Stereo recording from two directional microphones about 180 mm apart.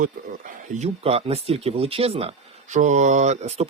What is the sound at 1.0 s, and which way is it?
Speech, 35° right (ahead or behind).